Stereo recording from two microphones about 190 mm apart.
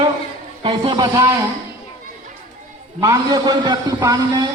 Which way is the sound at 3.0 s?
20° right (ahead or behind).